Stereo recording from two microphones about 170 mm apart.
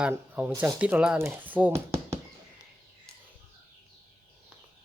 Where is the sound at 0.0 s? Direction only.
5° right (ahead or behind).